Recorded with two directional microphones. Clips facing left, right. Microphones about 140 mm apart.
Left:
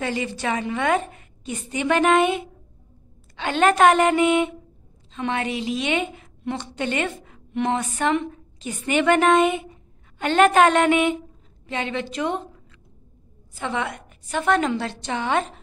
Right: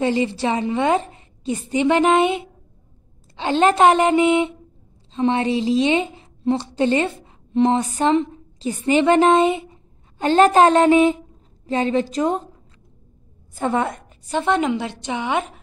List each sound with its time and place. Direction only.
0.0 s a woman's voice: 25° right (ahead or behind)
13.6 s a woman's voice: 45° right (ahead or behind); by 15.6 s 10° right (ahead or behind)